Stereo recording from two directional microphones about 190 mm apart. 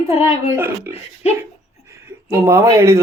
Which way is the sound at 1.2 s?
35° left (ahead or behind).